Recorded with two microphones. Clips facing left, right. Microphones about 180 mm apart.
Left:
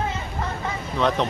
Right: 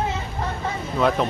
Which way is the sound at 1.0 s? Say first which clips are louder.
Right 1 dB; 5° right (ahead or behind).